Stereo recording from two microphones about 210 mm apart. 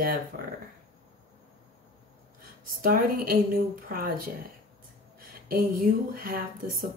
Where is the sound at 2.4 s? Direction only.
45° right (ahead or behind).